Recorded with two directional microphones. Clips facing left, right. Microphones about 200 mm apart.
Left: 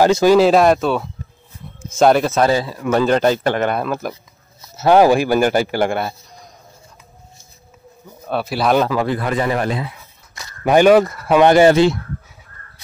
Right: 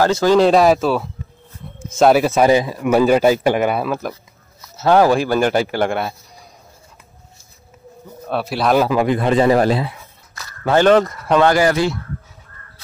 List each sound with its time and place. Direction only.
0.0 s speech: 15° left (ahead or behind); by 4.1 s 5° right (ahead or behind)
4.8 s speech: 15° left (ahead or behind)
8.3 s speech: centre (ahead or behind)
8.8 s speech: 15° right (ahead or behind); by 9.9 s 30° right (ahead or behind)
10.3 s speech: 15° left (ahead or behind)
11.4 s speech: 25° left (ahead or behind)